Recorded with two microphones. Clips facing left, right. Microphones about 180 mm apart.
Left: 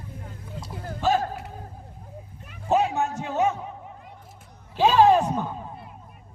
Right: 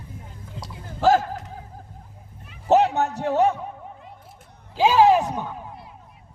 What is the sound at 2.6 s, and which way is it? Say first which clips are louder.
Music: right 4 dB; 70° right (ahead or behind).